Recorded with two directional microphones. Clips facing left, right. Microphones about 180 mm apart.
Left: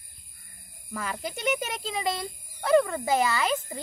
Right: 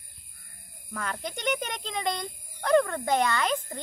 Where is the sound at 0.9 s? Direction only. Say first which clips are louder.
Left 1 dB; 5° left (ahead or behind).